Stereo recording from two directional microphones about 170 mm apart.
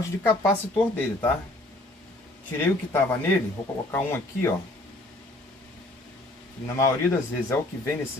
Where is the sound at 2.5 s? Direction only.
10° left (ahead or behind).